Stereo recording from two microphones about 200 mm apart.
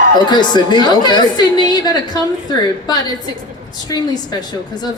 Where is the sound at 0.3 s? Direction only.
20° left (ahead or behind).